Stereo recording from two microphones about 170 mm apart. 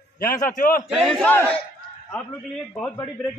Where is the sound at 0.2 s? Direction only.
55° left (ahead or behind).